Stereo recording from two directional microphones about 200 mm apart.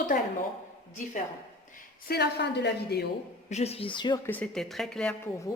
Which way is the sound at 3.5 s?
30° left (ahead or behind).